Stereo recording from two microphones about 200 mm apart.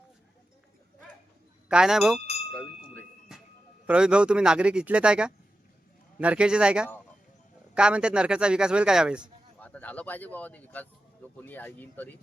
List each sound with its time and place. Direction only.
1.6 s speech: 5° right (ahead or behind)
2.2 s a sound: 30° left (ahead or behind)
3.8 s a man's voice: 5° right (ahead or behind)
9.6 s speech: 5° left (ahead or behind)